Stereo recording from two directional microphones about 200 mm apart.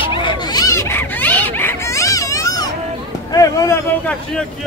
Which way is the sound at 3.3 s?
15° left (ahead or behind).